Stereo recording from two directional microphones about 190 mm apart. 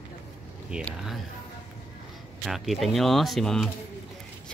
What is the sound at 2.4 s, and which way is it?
Speech, centre (ahead or behind).